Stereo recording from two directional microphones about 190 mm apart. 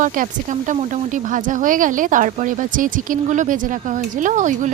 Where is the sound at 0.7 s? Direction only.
40° right (ahead or behind).